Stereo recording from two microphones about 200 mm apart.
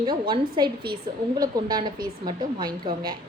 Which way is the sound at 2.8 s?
20° right (ahead or behind).